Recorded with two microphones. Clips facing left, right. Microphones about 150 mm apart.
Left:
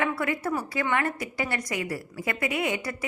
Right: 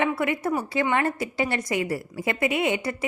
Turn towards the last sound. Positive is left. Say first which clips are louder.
# right 4 dB
turn(degrees=-25)  # may be behind; listen again after turning